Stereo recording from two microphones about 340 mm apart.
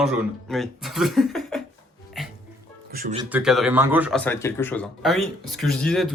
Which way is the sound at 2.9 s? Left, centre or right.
Right.